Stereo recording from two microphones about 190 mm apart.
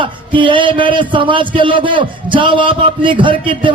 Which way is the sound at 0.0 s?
25° right (ahead or behind).